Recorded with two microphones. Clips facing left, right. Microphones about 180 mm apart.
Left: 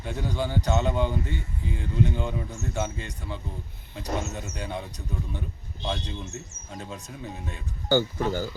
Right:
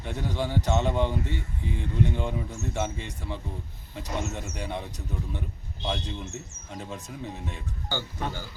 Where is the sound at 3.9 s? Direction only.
Centre (ahead or behind).